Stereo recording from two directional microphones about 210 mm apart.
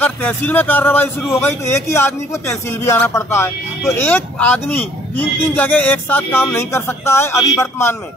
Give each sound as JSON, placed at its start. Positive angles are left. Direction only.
{"t": 0.0, "sound": "speech", "side_deg": 10}